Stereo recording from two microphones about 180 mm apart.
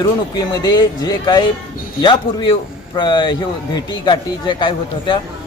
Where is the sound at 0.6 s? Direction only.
20° left (ahead or behind).